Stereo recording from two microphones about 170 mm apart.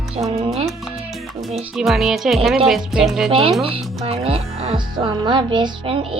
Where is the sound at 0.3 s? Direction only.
40° right (ahead or behind).